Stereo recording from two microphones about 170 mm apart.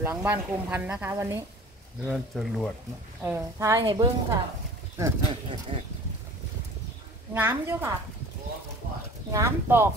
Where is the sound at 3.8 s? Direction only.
30° right (ahead or behind).